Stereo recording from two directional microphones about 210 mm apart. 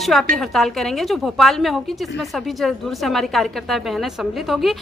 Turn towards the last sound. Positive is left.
turn(degrees=0)  # may be behind; listen again after turning